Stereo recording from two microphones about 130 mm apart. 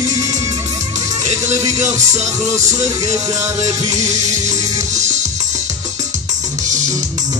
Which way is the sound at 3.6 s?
65° right (ahead or behind).